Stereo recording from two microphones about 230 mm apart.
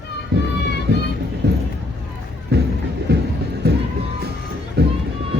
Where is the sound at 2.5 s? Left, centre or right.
Right.